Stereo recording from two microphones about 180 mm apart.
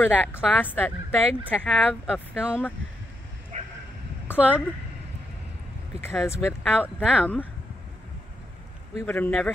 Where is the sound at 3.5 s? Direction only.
40° right (ahead or behind).